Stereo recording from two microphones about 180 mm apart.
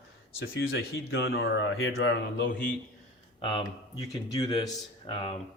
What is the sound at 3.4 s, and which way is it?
Speech, 30° left (ahead or behind).